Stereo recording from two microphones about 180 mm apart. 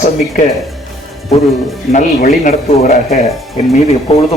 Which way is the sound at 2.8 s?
55° left (ahead or behind).